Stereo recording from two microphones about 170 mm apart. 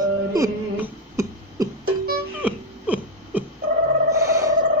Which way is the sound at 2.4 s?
10° right (ahead or behind).